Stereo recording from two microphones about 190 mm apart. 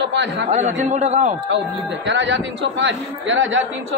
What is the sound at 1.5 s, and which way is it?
A man's voice, 70° right (ahead or behind).